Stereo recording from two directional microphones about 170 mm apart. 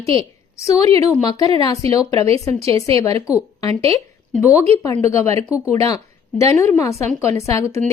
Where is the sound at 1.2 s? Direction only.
20° left (ahead or behind).